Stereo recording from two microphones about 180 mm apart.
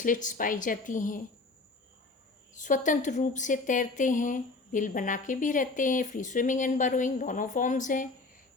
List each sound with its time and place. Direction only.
0.0 s a woman's voice: 45° left (ahead or behind)
2.5 s a woman's voice: 45° left (ahead or behind)